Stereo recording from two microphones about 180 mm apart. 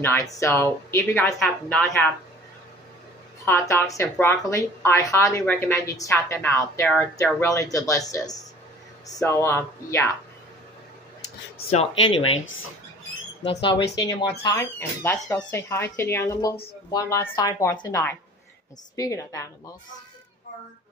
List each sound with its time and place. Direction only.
0.0 s speech: 15° left (ahead or behind)
1.4 s speech: centre (ahead or behind)
3.4 s speech: 15° left (ahead or behind)
11.5 s speech: 35° left (ahead or behind)
13.9 s speech: 20° left (ahead or behind)